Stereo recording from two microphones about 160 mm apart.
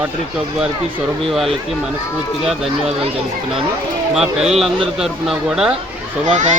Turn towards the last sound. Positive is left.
turn(degrees=-50)  # may be behind; listen again after turning